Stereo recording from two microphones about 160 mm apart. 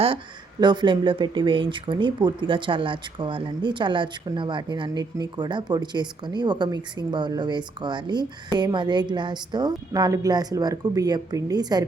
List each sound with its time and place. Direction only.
0.6 s speech: 30° right (ahead or behind)